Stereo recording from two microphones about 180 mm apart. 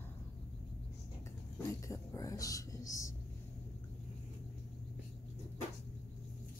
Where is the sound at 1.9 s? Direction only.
20° left (ahead or behind).